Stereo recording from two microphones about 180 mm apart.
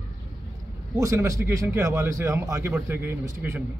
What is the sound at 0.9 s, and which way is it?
Speech, 15° right (ahead or behind).